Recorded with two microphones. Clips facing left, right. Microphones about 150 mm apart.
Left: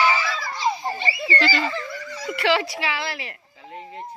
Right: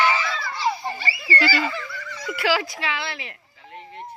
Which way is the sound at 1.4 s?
10° right (ahead or behind).